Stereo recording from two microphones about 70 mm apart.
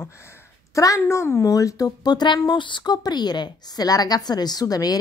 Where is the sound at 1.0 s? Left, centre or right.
Left.